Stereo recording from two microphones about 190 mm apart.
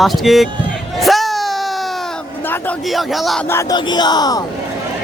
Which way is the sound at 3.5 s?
15° left (ahead or behind).